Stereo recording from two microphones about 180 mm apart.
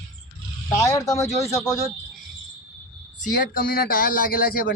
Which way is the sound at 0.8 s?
20° left (ahead or behind).